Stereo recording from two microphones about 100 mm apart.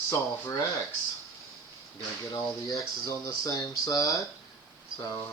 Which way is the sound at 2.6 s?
35° left (ahead or behind).